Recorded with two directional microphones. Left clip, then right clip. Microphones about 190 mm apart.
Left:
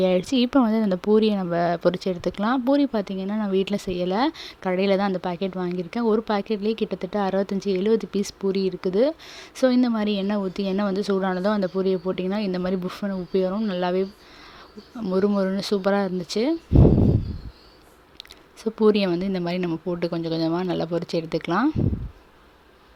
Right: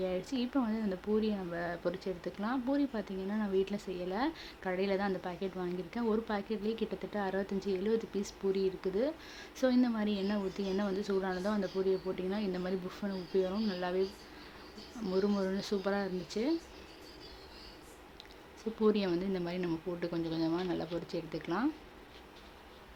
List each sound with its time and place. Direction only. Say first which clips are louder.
0.0 s speech: left 15 dB; 50° left (ahead or behind)
15.0 s speech: left 10 dB; 40° left (ahead or behind)
18.6 s speech: left 11 dB; 45° left (ahead or behind)